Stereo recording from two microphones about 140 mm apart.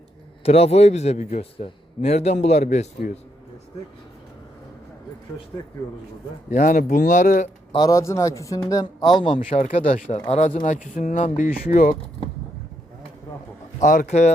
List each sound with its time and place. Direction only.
0.4 s a man's voice: 45° left (ahead or behind)
6.5 s speech: 65° left (ahead or behind)
7.7 s a man's voice: 30° left (ahead or behind)
9.6 s a man's voice: 50° left (ahead or behind); by 11.9 s 75° left (ahead or behind)
13.7 s speech: 70° left (ahead or behind)